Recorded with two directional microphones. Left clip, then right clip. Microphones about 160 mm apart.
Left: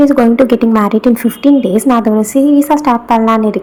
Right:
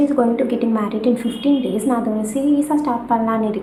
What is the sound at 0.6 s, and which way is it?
Speech, 40° left (ahead or behind).